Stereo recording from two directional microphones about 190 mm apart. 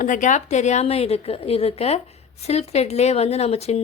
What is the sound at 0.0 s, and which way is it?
A woman's voice, 45° left (ahead or behind).